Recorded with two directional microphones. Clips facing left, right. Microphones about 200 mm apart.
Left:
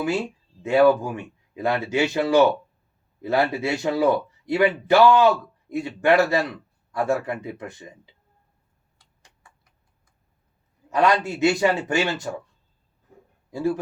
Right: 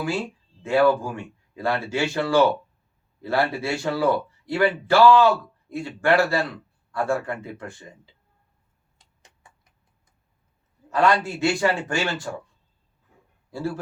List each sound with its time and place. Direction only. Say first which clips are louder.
0.6 s a man's voice: left 2 dB; 20° left (ahead or behind)
9.0 s clock: right 2 dB; 20° right (ahead or behind)
10.8 s a man's voice: even; 20° left (ahead or behind)
13.5 s speech: left 5 dB; 15° left (ahead or behind)